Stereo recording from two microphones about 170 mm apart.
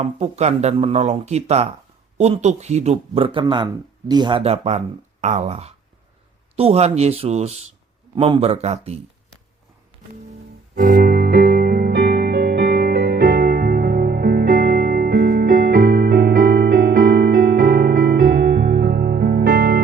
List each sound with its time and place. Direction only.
0.0 s speech: 40° right (ahead or behind)
10.8 s music: 60° right (ahead or behind)